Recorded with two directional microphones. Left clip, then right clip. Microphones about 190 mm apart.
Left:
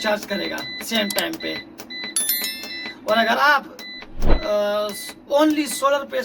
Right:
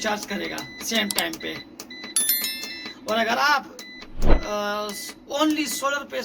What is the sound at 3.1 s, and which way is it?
A man's voice, 20° left (ahead or behind).